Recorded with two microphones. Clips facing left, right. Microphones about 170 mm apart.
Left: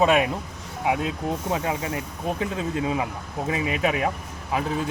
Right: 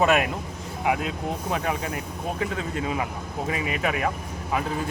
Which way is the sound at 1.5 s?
25° left (ahead or behind).